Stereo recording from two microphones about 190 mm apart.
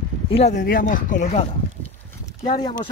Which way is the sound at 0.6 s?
45° left (ahead or behind).